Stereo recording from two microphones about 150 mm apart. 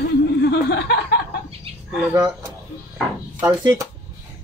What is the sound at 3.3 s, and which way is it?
Speech, 30° right (ahead or behind).